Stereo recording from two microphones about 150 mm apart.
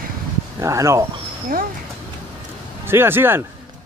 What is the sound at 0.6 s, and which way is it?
Speech, 20° right (ahead or behind).